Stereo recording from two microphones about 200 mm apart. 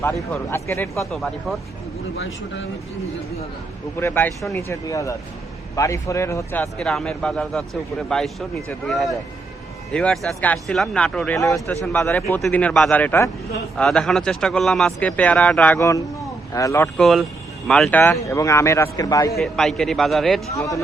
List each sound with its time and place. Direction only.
0.0 s speech: 10° left (ahead or behind)
1.1 s speech: centre (ahead or behind)
4.0 s speech: 10° left (ahead or behind)
17.0 s speech: centre (ahead or behind); by 19.4 s 15° left (ahead or behind)
19.4 s speech: centre (ahead or behind)
20.6 s speech: 15° left (ahead or behind)